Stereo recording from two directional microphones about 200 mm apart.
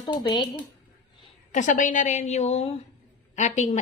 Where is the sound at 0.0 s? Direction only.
20° left (ahead or behind).